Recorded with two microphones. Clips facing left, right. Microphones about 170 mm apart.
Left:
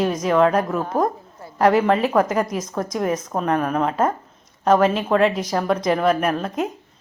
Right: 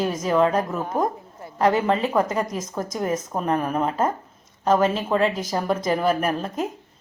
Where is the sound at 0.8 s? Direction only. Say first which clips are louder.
Left 3 dB; 20° right (ahead or behind).